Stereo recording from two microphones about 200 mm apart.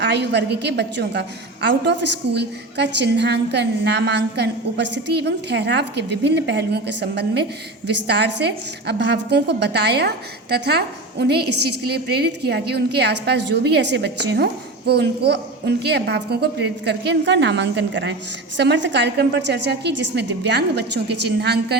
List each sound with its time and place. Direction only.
0.0 s a woman's voice: 55° right (ahead or behind)